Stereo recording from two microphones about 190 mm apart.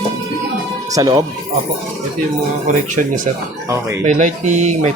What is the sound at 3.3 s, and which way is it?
Speech, 40° right (ahead or behind).